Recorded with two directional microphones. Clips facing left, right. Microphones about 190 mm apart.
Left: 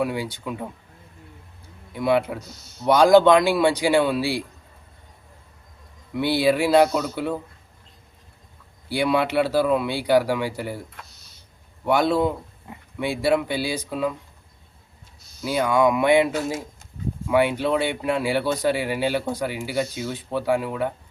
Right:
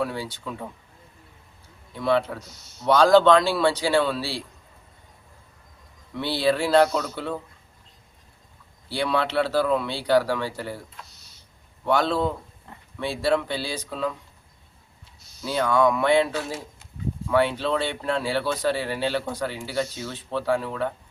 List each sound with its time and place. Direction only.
0.0 s speech: 15° left (ahead or behind)
1.9 s speech: 15° left (ahead or behind)
6.1 s speech: 10° left (ahead or behind)
8.9 s speech: 10° left (ahead or behind)
11.9 s speech: 10° left (ahead or behind)
15.4 s speech: 10° left (ahead or behind)
16.3 s speech: 45° left (ahead or behind)
17.2 s speech: 15° left (ahead or behind)